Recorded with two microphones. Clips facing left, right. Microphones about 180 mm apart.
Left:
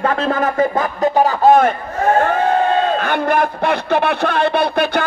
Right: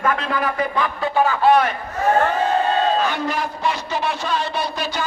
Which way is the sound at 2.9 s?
55° left (ahead or behind).